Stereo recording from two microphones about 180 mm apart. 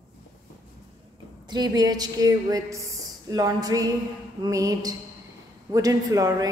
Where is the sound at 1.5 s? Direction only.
20° right (ahead or behind).